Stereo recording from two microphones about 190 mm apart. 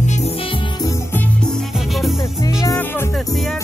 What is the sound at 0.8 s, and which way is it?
Music, 10° left (ahead or behind).